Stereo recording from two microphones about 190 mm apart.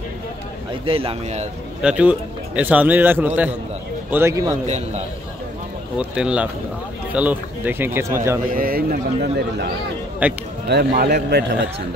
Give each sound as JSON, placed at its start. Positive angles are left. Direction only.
{"t": 0.8, "sound": "speech", "side_deg": -30}
{"t": 1.8, "sound": "speech", "side_deg": -5}
{"t": 4.6, "sound": "a man's voice", "side_deg": -35}
{"t": 5.9, "sound": "speech", "side_deg": -5}
{"t": 8.5, "sound": "a man's voice", "side_deg": -50}
{"t": 10.2, "sound": "speech", "side_deg": -10}
{"t": 10.7, "sound": "a man's voice", "side_deg": -55}